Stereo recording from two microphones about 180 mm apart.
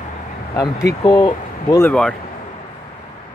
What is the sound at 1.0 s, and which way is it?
Speech, 20° left (ahead or behind).